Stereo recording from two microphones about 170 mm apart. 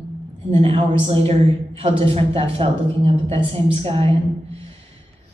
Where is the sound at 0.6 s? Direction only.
35° right (ahead or behind).